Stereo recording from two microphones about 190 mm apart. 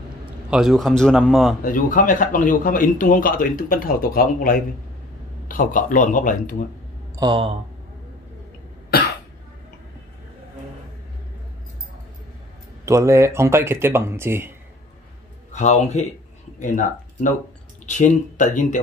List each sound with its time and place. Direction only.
0.5 s a man's voice: centre (ahead or behind)
1.6 s a man's voice: 45° left (ahead or behind)
7.2 s speech: 25° right (ahead or behind)
8.9 s cough: 55° left (ahead or behind)
12.8 s speech: 15° right (ahead or behind)
15.5 s speech: 40° left (ahead or behind)